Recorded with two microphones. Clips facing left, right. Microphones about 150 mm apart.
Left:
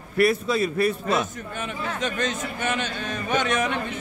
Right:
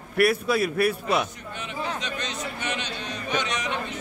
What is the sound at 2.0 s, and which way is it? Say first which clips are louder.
A man's voice: left 5 dB; 50° left (ahead or behind).